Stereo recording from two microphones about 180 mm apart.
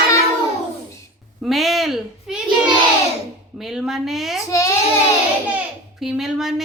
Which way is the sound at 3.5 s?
Centre (ahead or behind).